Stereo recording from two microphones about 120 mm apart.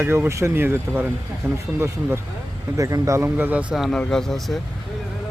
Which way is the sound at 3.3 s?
10° right (ahead or behind).